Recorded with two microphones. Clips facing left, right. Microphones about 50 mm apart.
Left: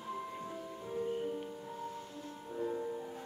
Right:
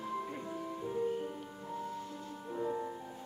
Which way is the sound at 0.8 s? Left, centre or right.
Centre.